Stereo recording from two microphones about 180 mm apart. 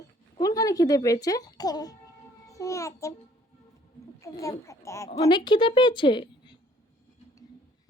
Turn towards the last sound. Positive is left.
turn(degrees=25)  # may be behind; listen again after turning